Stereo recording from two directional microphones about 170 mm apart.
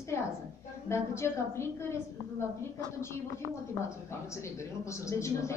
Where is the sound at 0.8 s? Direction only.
15° left (ahead or behind).